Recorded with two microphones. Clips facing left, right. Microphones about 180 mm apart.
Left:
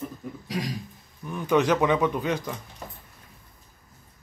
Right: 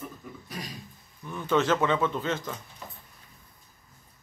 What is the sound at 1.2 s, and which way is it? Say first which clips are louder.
Speech: left 3 dB; 15° left (ahead or behind).